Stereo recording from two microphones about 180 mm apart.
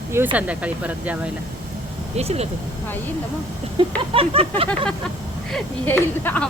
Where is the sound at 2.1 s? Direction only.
35° right (ahead or behind).